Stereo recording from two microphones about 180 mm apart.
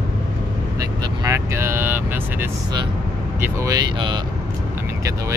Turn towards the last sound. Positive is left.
turn(degrees=-25)  # may be behind; listen again after turning